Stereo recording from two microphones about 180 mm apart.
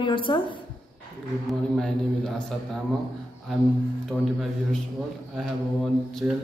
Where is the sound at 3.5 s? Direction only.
Centre (ahead or behind).